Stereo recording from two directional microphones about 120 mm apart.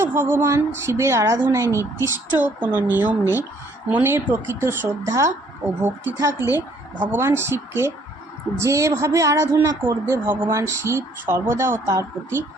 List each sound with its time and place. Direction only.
0.0 s music: 20° right (ahead or behind)
0.9 s a woman's voice: 25° right (ahead or behind)
2.4 s a woman's voice: 15° right (ahead or behind)